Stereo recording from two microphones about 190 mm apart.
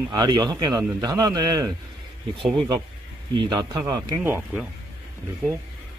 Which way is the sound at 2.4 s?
Centre (ahead or behind).